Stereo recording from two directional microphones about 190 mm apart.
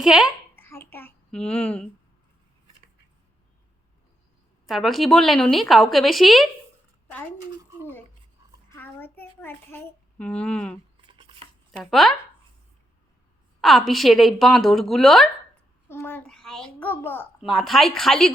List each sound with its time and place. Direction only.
0.0 s a woman's voice: 5° right (ahead or behind)
0.5 s a sound: 10° left (ahead or behind)
4.6 s a woman's voice: centre (ahead or behind)
8.7 s a child's voice: 10° left (ahead or behind)
11.0 s a sound: 25° right (ahead or behind)
11.8 s a woman's voice: centre (ahead or behind)
13.6 s a woman's voice: centre (ahead or behind)
15.9 s a child's voice: 10° left (ahead or behind)